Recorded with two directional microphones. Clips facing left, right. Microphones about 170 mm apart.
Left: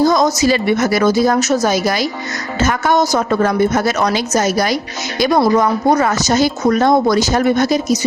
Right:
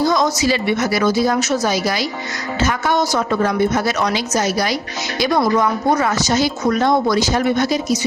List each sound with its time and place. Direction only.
0.0 s speech: 40° left (ahead or behind)